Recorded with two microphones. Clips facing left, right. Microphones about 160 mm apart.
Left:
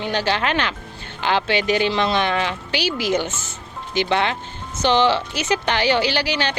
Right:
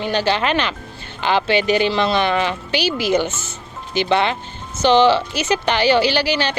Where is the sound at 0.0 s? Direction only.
10° right (ahead or behind).